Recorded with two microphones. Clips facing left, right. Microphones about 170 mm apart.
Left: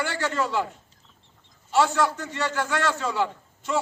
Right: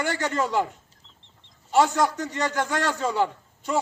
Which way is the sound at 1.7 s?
15° right (ahead or behind).